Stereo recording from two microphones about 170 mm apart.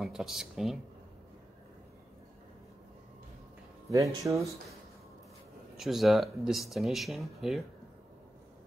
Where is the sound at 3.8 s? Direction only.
20° right (ahead or behind).